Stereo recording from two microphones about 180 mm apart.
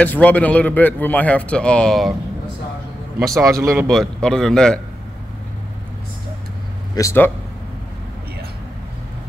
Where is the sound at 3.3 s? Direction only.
20° right (ahead or behind).